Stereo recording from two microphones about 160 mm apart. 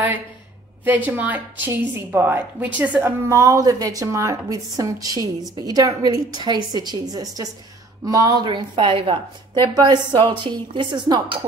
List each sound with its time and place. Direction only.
0.8 s a woman's voice: 10° right (ahead or behind); by 11.3 s 30° right (ahead or behind)